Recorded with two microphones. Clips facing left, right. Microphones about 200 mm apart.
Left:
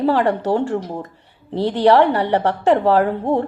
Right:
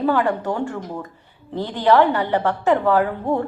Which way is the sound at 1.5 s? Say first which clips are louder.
Left 3 dB; 70° left (ahead or behind).